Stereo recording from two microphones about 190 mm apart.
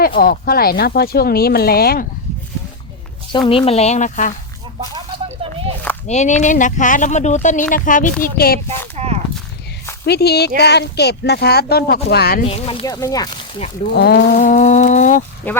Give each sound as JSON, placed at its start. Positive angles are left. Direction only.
{"t": 0.2, "sound": "speech", "side_deg": 50}
{"t": 3.3, "sound": "speech", "side_deg": 25}
{"t": 4.8, "sound": "a sound", "side_deg": -25}
{"t": 6.1, "sound": "speech", "side_deg": 40}
{"t": 9.0, "sound": "walk", "side_deg": -35}
{"t": 10.1, "sound": "speech", "side_deg": 60}
{"t": 12.5, "sound": "speech", "side_deg": 30}
{"t": 12.8, "sound": "speech", "side_deg": 20}
{"t": 13.9, "sound": "speech", "side_deg": 60}
{"t": 15.4, "sound": "speech", "side_deg": 10}